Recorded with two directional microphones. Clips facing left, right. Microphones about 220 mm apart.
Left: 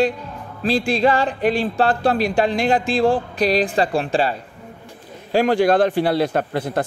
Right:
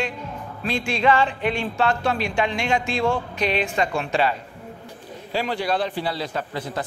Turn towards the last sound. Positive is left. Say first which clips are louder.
# left 7 dB
turn(degrees=55)  # may be behind; listen again after turning